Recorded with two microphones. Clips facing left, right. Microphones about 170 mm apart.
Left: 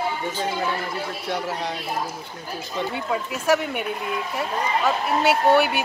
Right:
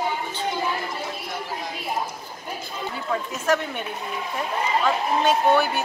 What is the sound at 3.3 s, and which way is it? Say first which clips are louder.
Speech: left 3 dB; 10° left (ahead or behind).